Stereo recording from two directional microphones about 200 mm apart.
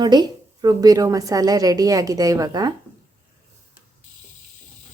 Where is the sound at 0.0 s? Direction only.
20° right (ahead or behind).